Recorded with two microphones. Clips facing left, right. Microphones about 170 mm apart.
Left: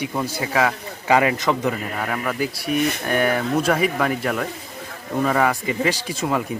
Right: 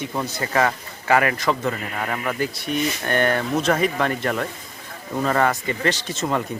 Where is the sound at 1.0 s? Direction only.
15° left (ahead or behind).